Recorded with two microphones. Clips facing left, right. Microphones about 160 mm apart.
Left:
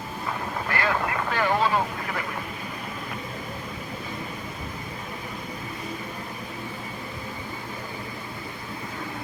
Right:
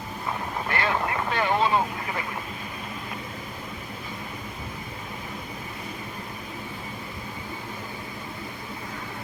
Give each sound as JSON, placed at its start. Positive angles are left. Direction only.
{"t": 0.7, "sound": "vehicle", "side_deg": -25}